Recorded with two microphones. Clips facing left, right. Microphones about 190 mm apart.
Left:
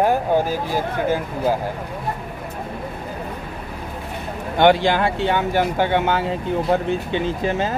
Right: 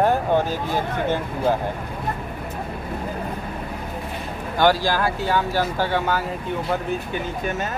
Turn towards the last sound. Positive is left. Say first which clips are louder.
# left 5 dB
turn(degrees=30)  # may be behind; listen again after turning